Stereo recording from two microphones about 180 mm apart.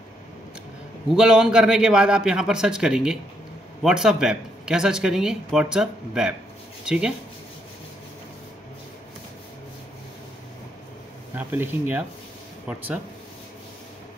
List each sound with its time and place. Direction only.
1.1 s speech: 5° right (ahead or behind)
11.3 s speech: 10° right (ahead or behind)